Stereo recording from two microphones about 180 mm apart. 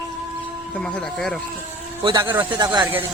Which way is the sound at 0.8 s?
5° left (ahead or behind).